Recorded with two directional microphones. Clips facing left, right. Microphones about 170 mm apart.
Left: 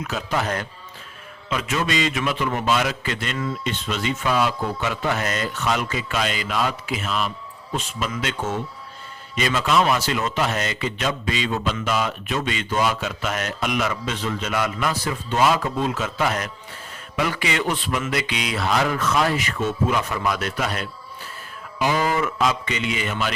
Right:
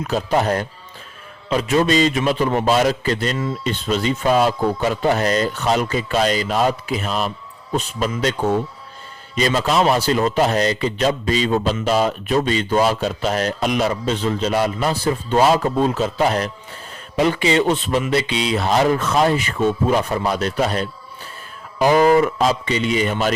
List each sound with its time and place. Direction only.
0.0 s a man's voice: 35° right (ahead or behind)